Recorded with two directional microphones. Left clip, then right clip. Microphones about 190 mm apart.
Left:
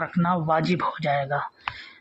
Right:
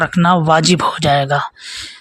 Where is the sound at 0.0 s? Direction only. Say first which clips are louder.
Right 12 dB; 40° right (ahead or behind).